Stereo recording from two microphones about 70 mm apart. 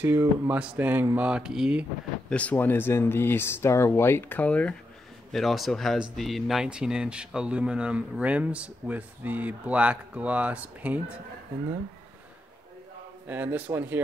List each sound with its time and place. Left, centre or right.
0.0 s speech: right
1.1 s speech: centre
2.2 s speech: centre
5.3 s a man's voice: centre
13.3 s speech: right